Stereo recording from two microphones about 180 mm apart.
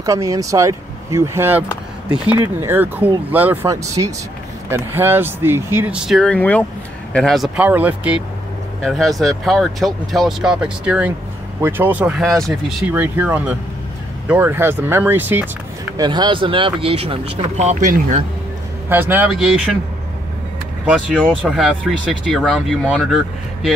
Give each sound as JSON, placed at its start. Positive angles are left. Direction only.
{"t": 0.0, "sound": "speech", "side_deg": -20}
{"t": 12.9, "sound": "speech", "side_deg": -10}
{"t": 16.0, "sound": "speech", "side_deg": -25}
{"t": 18.9, "sound": "speech", "side_deg": -10}
{"t": 19.3, "sound": "speech", "side_deg": 0}
{"t": 20.8, "sound": "speech", "side_deg": -5}